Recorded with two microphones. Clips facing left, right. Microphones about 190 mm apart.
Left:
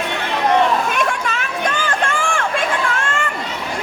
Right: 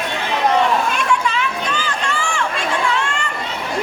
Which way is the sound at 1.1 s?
50° left (ahead or behind).